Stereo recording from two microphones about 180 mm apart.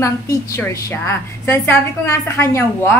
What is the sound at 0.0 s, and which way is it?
A woman's voice, 15° left (ahead or behind).